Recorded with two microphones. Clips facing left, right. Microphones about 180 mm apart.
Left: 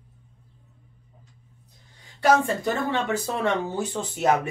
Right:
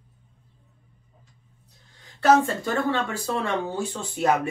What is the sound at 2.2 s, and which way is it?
Speech, 15° left (ahead or behind).